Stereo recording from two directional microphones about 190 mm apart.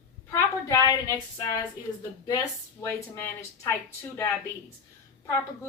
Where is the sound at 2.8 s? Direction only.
10° left (ahead or behind).